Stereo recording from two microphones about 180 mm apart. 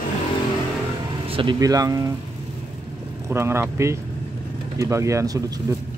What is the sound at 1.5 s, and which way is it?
Speech, 20° right (ahead or behind).